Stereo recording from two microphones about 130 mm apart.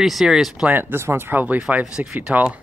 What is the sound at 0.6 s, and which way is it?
Speech, 15° right (ahead or behind).